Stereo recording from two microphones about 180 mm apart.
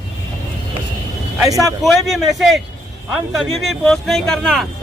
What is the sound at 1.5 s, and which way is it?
Speech, 20° right (ahead or behind).